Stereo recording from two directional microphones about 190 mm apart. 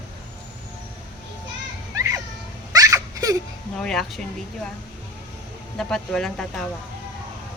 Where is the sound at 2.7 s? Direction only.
20° right (ahead or behind).